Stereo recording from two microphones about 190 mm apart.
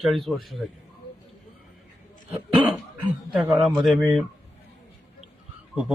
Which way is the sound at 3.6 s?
Centre (ahead or behind).